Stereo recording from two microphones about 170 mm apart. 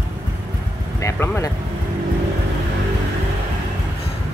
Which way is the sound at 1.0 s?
15° left (ahead or behind).